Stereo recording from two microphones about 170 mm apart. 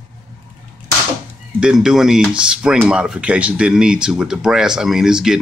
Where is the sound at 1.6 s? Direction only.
5° right (ahead or behind).